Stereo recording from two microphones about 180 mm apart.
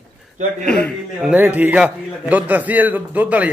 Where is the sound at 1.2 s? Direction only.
10° right (ahead or behind).